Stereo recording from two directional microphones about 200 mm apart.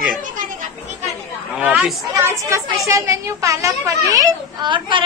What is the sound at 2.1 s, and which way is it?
A woman's voice, 15° right (ahead or behind).